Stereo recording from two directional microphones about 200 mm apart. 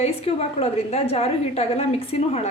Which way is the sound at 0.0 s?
30° left (ahead or behind).